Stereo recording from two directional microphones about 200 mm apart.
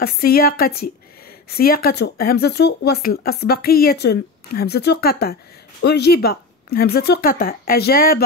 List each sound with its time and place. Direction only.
0.0 s speech: 50° left (ahead or behind)